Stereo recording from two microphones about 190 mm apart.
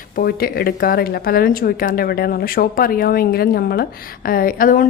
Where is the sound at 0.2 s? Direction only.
50° left (ahead or behind).